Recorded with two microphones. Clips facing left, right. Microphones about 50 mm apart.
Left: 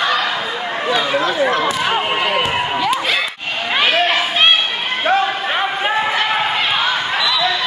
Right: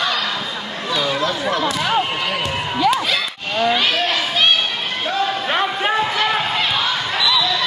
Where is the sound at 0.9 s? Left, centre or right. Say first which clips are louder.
Left 2 dB; left.